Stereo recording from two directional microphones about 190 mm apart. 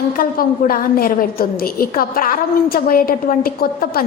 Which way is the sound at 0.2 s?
50° left (ahead or behind).